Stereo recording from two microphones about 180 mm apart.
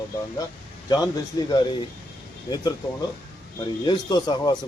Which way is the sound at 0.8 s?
20° left (ahead or behind).